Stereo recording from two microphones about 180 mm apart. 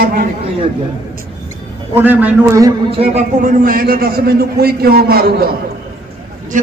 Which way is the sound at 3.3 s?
50° right (ahead or behind).